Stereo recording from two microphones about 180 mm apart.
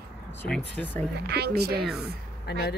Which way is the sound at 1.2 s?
65° right (ahead or behind).